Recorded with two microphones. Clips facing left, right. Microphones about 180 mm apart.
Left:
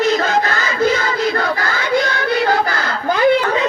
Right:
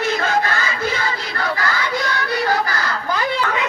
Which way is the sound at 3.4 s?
35° left (ahead or behind).